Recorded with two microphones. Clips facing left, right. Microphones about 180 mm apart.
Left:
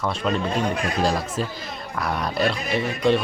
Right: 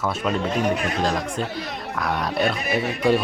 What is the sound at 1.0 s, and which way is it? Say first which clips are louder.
Speech: left 1 dB; 5° left (ahead or behind).